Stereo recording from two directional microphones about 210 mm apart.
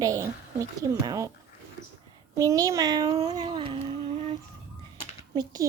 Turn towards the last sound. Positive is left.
turn(degrees=-20)  # may be behind; listen again after turning